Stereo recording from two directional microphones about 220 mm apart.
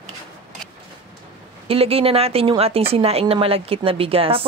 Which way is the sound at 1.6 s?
25° right (ahead or behind).